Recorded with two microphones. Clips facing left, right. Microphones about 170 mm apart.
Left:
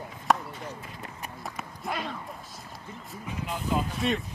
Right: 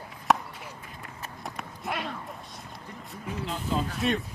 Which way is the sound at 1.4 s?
Centre (ahead or behind).